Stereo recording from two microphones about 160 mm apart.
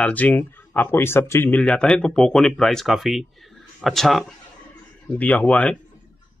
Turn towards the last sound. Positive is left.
turn(degrees=10)  # may be behind; listen again after turning